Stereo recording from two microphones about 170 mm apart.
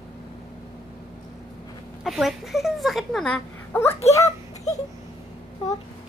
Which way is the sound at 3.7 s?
15° left (ahead or behind).